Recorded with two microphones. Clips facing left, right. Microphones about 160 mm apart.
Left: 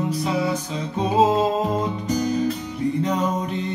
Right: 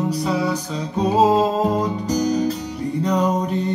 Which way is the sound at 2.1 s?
35° right (ahead or behind).